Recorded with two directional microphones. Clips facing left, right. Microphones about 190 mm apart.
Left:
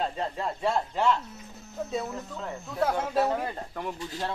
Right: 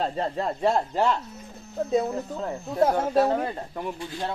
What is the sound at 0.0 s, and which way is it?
Speech, 35° right (ahead or behind).